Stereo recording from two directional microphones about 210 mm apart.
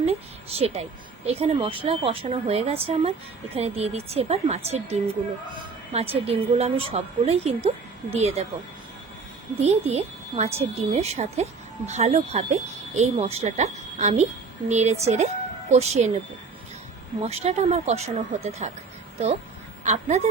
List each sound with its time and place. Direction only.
0.0 s a woman's voice: 30° right (ahead or behind)
9.6 s speech: 30° right (ahead or behind)
17.2 s speech: 30° right (ahead or behind)
19.8 s a woman's voice: 35° right (ahead or behind)